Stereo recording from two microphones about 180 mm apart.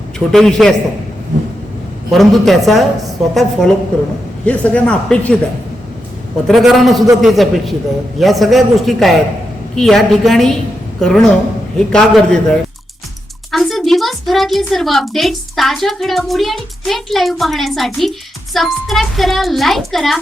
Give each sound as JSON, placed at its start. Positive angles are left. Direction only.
{"t": 0.3, "sound": "a woman's voice", "side_deg": 5}
{"t": 2.0, "sound": "a woman's voice", "side_deg": 0}
{"t": 6.5, "sound": "a woman's voice", "side_deg": 0}